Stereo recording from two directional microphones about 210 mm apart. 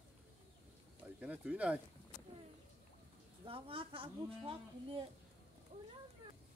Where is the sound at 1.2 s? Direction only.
5° right (ahead or behind).